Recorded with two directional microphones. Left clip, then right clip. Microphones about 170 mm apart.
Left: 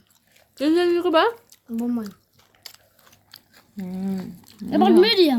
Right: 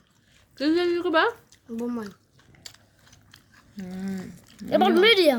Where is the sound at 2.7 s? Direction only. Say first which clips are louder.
Left 2 dB; 10° left (ahead or behind).